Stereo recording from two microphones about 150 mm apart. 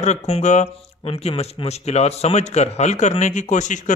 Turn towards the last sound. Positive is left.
turn(degrees=55)  # may be behind; listen again after turning